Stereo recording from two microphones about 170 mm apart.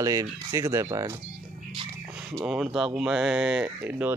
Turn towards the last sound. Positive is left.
turn(degrees=-10)  # may be behind; listen again after turning